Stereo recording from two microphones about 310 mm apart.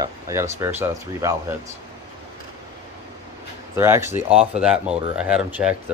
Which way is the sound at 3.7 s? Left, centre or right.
Centre.